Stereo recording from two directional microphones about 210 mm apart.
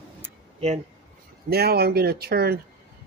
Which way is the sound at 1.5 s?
50° right (ahead or behind).